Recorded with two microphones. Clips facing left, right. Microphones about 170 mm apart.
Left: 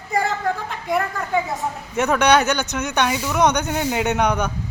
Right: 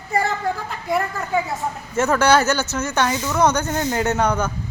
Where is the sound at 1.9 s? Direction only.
15° left (ahead or behind).